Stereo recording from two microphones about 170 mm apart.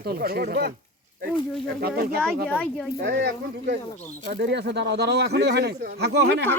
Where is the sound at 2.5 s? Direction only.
5° left (ahead or behind).